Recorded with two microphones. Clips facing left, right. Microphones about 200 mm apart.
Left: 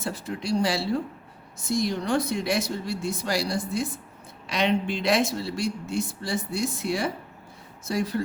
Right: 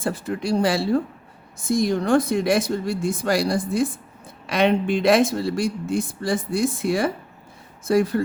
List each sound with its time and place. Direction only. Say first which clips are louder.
0.0 s speech: right 6 dB; 55° right (ahead or behind)